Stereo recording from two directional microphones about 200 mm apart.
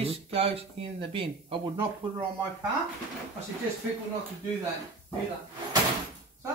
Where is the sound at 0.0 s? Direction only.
30° right (ahead or behind).